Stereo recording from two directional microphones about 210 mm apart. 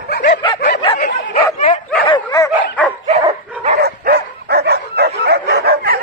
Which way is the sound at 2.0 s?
20° left (ahead or behind).